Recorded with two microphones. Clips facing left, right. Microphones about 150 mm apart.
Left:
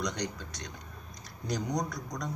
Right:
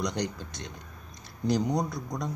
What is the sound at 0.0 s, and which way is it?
A man's voice, 30° right (ahead or behind).